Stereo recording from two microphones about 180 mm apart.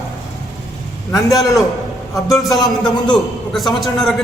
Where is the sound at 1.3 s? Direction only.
20° left (ahead or behind).